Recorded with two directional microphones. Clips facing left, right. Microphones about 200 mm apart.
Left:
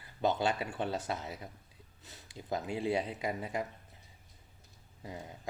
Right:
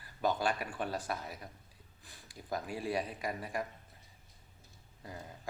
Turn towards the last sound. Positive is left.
turn(degrees=20)  # may be behind; listen again after turning